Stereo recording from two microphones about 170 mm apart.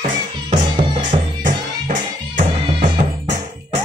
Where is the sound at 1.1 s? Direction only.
50° right (ahead or behind).